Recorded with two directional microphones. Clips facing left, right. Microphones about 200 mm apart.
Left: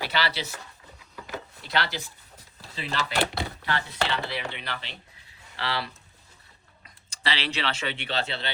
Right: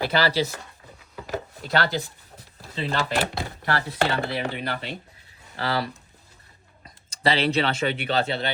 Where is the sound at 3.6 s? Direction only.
50° right (ahead or behind).